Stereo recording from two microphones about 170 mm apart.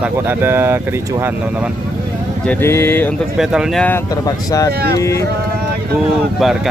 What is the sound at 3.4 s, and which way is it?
Speech, 5° right (ahead or behind).